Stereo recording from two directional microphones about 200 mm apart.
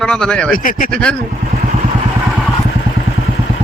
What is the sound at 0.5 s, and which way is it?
Speech, 45° left (ahead or behind).